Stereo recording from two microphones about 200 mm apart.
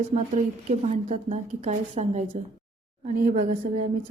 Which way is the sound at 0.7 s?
35° right (ahead or behind).